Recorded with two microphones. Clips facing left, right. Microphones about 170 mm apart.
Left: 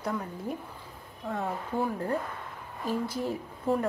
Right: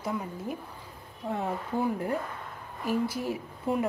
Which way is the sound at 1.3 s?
20° right (ahead or behind).